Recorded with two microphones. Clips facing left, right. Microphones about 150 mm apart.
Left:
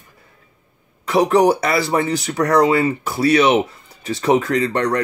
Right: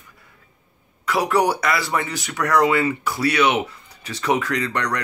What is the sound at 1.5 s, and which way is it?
Speech, 30° left (ahead or behind).